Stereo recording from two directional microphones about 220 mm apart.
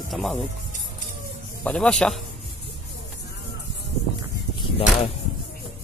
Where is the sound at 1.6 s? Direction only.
5° left (ahead or behind).